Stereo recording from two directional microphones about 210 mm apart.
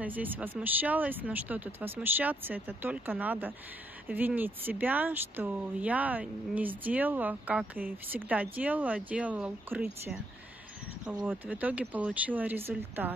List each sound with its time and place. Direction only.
0.0 s speech: 10° right (ahead or behind)